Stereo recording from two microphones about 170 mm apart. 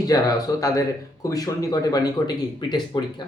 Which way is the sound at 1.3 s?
20° left (ahead or behind).